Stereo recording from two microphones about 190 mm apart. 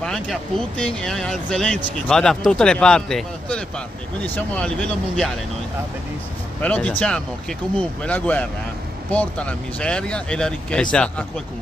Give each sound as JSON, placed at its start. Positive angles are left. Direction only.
{"t": 0.0, "sound": "speech", "side_deg": 5}
{"t": 6.6, "sound": "speech", "side_deg": 5}